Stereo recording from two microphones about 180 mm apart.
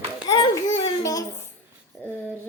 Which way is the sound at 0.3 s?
20° left (ahead or behind).